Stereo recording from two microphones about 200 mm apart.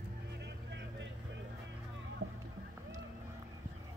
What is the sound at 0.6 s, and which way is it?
Vehicle, 60° right (ahead or behind).